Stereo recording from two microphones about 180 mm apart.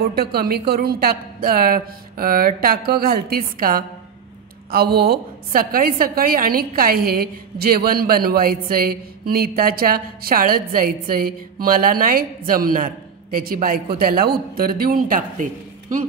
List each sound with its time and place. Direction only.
0.0 s a woman's voice: 60° right (ahead or behind)